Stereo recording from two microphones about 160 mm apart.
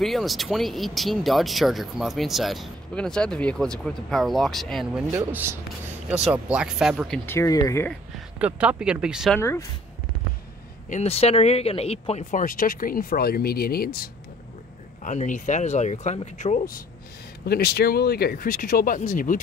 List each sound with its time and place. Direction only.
0.0 s speech: centre (ahead or behind)
5.1 s speech: 15° right (ahead or behind)
7.2 s speech: 20° left (ahead or behind)
8.4 s speech: 10° right (ahead or behind)
9.4 s speech: 20° left (ahead or behind)
10.9 s speech: 40° left (ahead or behind); by 14.1 s 70° left (ahead or behind)
15.0 s speech: 50° left (ahead or behind)
17.5 s speech: 80° left; by 19.4 s 55° left (ahead or behind)